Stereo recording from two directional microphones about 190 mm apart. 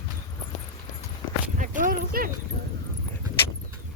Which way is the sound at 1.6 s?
45° right (ahead or behind).